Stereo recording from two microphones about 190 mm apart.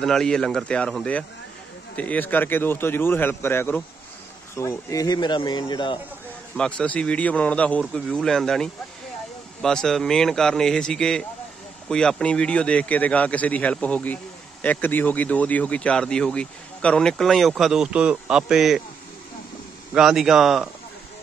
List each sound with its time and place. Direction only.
0.0 s a man's voice: 5° left (ahead or behind); by 5.9 s 25° left (ahead or behind)
6.5 s a man's voice: 5° left (ahead or behind)
19.9 s speech: centre (ahead or behind)